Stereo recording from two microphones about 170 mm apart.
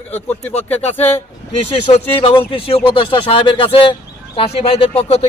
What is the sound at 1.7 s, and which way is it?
Speech, 35° left (ahead or behind).